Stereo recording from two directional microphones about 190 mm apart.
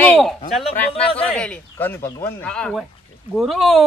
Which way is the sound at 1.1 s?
5° left (ahead or behind).